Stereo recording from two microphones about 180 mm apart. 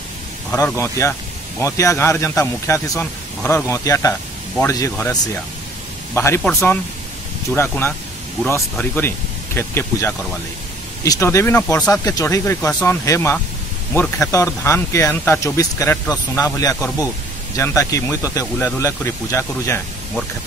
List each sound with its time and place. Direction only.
0.5 s speech: 10° left (ahead or behind)